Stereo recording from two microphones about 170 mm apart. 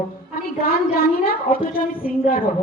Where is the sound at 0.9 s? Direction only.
60° left (ahead or behind).